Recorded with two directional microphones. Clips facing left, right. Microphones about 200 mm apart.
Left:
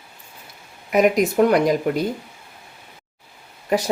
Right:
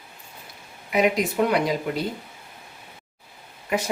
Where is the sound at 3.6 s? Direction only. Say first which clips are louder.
Left 5 dB; 35° left (ahead or behind).